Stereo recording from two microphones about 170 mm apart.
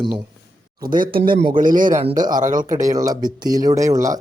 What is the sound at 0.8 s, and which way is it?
A man's voice, 55° right (ahead or behind).